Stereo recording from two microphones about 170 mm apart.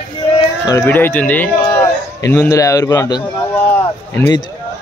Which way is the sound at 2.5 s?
20° left (ahead or behind).